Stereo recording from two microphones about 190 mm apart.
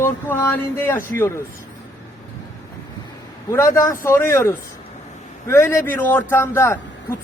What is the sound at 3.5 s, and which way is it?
A man's voice, 15° left (ahead or behind).